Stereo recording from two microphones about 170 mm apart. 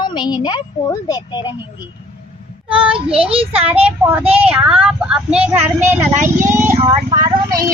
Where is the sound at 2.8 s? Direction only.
30° right (ahead or behind).